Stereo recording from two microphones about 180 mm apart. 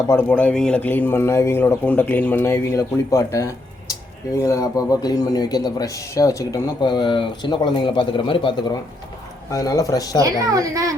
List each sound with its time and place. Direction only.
0.1 s a man's voice: 10° left (ahead or behind)
10.2 s a child's voice: 20° right (ahead or behind)